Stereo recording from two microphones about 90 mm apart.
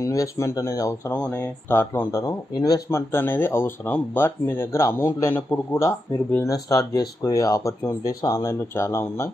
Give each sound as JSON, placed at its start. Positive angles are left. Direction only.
{"t": 0.0, "sound": "a man's voice", "side_deg": 35}
{"t": 1.7, "sound": "speech", "side_deg": 25}
{"t": 2.9, "sound": "a man's voice", "side_deg": 25}